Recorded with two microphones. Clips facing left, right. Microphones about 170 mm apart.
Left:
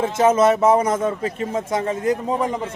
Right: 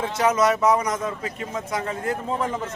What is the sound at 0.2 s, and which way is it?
A man's voice, 25° left (ahead or behind).